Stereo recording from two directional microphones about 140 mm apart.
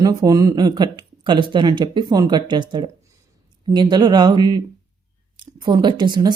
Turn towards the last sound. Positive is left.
turn(degrees=-30)  # may be behind; listen again after turning